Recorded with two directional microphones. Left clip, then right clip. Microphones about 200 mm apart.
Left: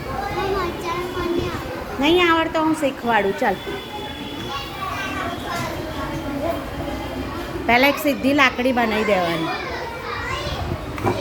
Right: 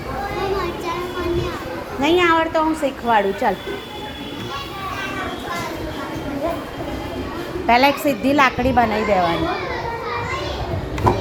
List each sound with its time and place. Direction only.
2.0 s a child's voice: 5° left (ahead or behind)
7.7 s a woman's voice: 10° left (ahead or behind)
8.7 s a child's voice: 15° left (ahead or behind)